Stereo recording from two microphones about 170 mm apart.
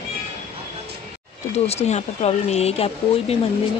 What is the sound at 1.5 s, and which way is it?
A woman's voice, 40° left (ahead or behind).